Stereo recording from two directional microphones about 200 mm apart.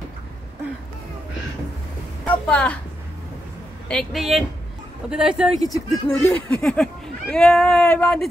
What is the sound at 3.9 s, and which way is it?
Speech, centre (ahead or behind).